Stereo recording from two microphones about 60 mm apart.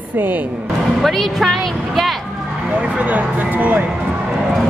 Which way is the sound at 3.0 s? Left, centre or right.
Right.